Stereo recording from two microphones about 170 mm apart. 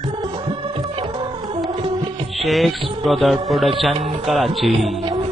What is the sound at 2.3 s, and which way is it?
Music, centre (ahead or behind).